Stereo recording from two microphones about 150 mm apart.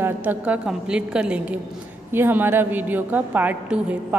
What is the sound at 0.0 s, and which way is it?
A woman's voice, 10° right (ahead or behind).